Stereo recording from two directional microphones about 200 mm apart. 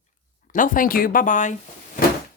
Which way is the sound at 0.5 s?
40° left (ahead or behind).